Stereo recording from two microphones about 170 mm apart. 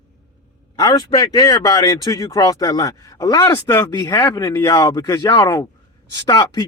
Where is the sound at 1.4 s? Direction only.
20° left (ahead or behind).